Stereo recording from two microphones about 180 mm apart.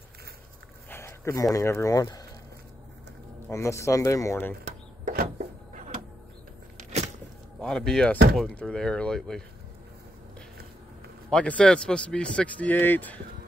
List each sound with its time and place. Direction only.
0.8 s speech: 15° left (ahead or behind)
3.4 s speech: 15° left (ahead or behind)
4.6 s a sound: 50° right (ahead or behind)
6.8 s power windows: 40° right (ahead or behind)
7.6 s speech: 5° left (ahead or behind)
11.2 s speech: 5° left (ahead or behind)